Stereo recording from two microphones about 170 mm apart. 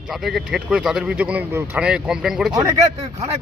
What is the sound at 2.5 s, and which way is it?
Speech, 20° right (ahead or behind).